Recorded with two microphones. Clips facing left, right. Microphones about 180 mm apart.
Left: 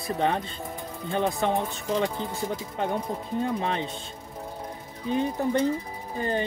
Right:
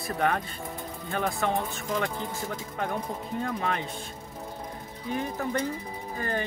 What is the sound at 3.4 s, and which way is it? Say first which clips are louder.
Speech: left 2 dB; 25° left (ahead or behind).